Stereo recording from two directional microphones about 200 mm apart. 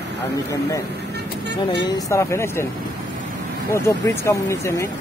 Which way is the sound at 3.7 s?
15° left (ahead or behind).